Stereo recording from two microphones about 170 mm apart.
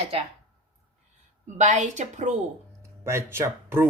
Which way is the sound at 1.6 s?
45° right (ahead or behind).